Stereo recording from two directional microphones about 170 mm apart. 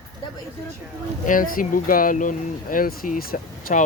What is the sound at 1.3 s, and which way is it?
Speech, 55° left (ahead or behind).